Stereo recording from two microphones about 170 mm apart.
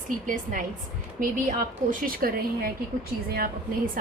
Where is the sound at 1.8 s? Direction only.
60° right (ahead or behind).